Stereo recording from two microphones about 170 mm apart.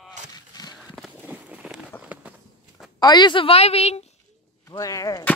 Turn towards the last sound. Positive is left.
turn(degrees=20)  # may be behind; listen again after turning